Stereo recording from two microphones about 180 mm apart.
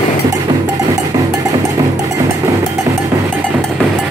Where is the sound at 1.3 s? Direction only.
20° right (ahead or behind).